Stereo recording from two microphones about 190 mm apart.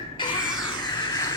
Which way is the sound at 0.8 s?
20° left (ahead or behind).